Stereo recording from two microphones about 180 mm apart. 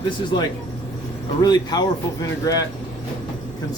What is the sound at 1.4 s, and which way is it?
Speech, 20° left (ahead or behind).